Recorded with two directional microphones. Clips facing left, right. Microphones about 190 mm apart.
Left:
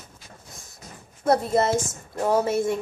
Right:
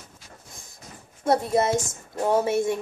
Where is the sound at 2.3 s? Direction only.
15° right (ahead or behind).